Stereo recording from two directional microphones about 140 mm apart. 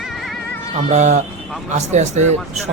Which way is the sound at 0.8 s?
60° right (ahead or behind).